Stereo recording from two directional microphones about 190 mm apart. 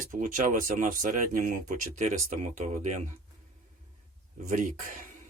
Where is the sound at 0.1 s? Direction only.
45° right (ahead or behind).